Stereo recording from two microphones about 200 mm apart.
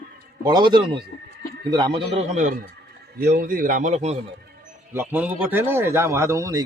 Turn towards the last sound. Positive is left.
turn(degrees=-15)  # may be behind; listen again after turning